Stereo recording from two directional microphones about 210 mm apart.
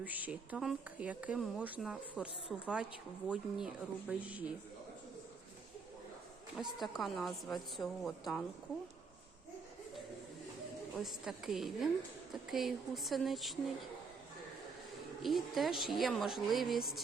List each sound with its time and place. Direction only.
0.0 s speech: 5° right (ahead or behind)
6.7 s speech: centre (ahead or behind)
11.0 s speech: centre (ahead or behind)
15.2 s speech: centre (ahead or behind)